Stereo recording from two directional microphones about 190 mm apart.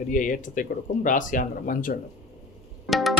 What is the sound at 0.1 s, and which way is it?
Speech, 45° left (ahead or behind).